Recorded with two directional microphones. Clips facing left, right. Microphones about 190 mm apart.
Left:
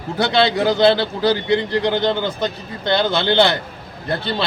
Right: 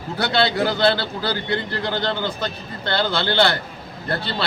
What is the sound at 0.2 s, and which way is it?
A man's voice, 20° left (ahead or behind).